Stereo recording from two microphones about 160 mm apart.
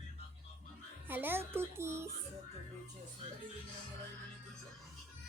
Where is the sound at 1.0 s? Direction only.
10° right (ahead or behind).